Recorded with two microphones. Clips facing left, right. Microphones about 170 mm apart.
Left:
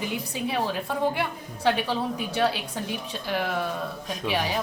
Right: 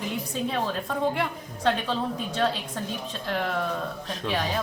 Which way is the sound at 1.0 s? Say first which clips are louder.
Even; 5° left (ahead or behind).